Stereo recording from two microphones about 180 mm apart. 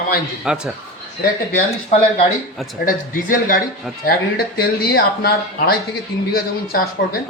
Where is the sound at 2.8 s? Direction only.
50° left (ahead or behind).